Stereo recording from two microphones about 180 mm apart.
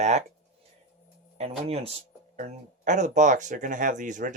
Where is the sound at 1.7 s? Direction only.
35° right (ahead or behind).